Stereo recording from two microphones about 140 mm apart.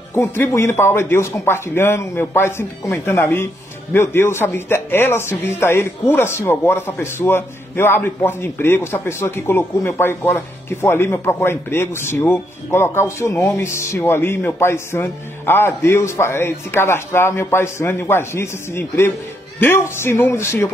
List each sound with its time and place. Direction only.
0.1 s speech: 15° left (ahead or behind)